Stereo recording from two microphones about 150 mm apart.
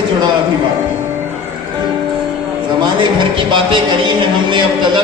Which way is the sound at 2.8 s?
30° right (ahead or behind).